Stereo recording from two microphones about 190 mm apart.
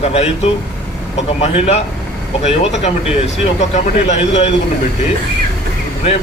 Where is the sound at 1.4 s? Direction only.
35° left (ahead or behind).